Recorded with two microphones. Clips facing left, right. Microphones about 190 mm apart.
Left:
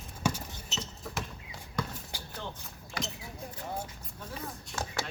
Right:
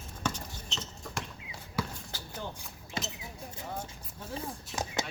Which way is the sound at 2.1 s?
15° left (ahead or behind).